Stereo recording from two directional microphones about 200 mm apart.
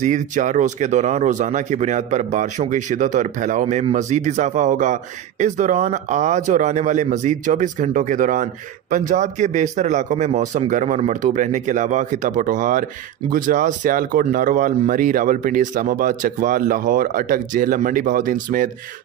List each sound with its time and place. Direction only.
0.0 s a man's voice: 40° right (ahead or behind)